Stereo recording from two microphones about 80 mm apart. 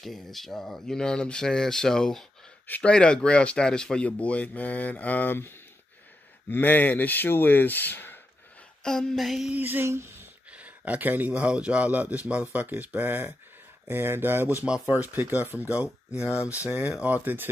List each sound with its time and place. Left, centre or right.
0.0 s speech: centre; by 5.5 s left
6.5 s speech: left
8.8 s speech: centre
9.5 s speech: right
10.5 s speech: centre
16.1 s speech: left
16.6 s speech: centre